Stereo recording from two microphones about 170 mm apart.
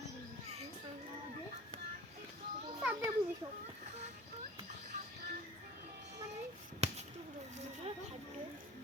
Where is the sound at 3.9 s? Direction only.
40° right (ahead or behind).